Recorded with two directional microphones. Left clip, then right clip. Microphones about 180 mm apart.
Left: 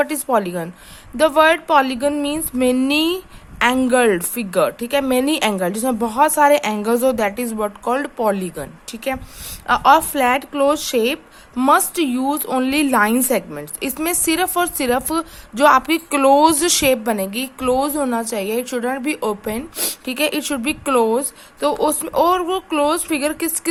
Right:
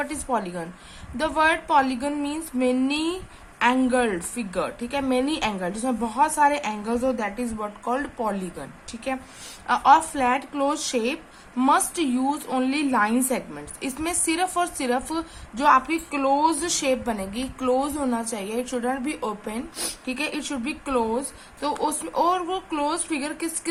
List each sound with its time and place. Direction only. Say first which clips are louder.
0.0 s speech: left 9 dB; 50° left (ahead or behind)